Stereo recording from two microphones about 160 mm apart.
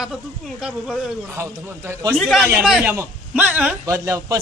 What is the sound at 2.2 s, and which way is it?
A man's voice, centre (ahead or behind).